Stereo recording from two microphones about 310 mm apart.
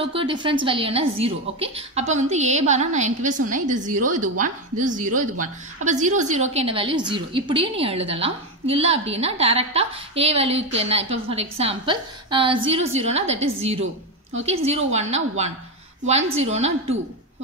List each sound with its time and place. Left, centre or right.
0.0 s a woman's voice: centre